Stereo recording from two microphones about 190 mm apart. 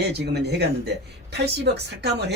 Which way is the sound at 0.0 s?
60° right (ahead or behind).